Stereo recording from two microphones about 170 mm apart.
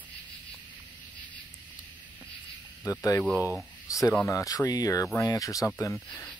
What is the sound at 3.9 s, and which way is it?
Speech, 20° left (ahead or behind).